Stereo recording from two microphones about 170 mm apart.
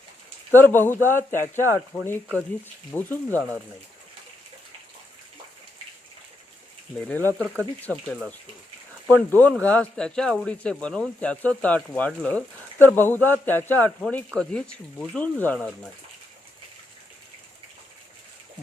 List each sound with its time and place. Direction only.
0.5 s speech: 10° left (ahead or behind)
1.6 s speech: 15° right (ahead or behind)
2.9 s speech: 10° left (ahead or behind)
7.2 s speech: 15° right (ahead or behind)
7.8 s speech: 10° left (ahead or behind)
15.5 s speech: centre (ahead or behind)